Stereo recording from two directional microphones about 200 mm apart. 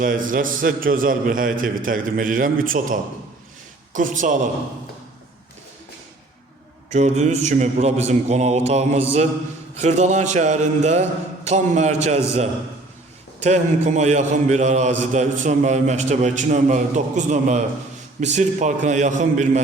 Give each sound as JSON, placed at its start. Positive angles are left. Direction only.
{"t": 0.0, "sound": "a man's voice", "side_deg": -45}
{"t": 6.9, "sound": "a man's voice", "side_deg": -35}